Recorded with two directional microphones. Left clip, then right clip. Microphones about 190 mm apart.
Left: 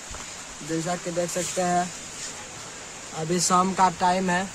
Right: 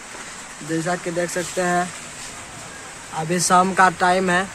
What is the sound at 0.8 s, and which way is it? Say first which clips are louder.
Speech: right 5 dB; 10° left (ahead or behind).